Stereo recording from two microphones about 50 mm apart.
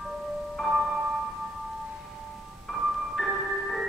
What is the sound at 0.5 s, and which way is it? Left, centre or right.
Music, centre.